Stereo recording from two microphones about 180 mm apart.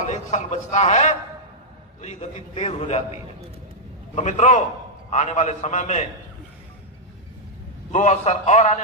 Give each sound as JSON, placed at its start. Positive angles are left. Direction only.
{"t": 0.0, "sound": "a man's voice", "side_deg": 40}
{"t": 7.9, "sound": "a man's voice", "side_deg": 40}